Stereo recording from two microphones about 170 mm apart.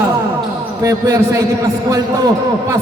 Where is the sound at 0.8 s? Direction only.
20° right (ahead or behind).